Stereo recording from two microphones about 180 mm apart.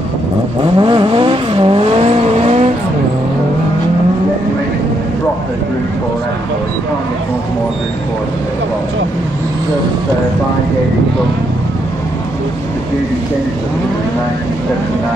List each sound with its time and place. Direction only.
0.7 s vehicle: 30° right (ahead or behind)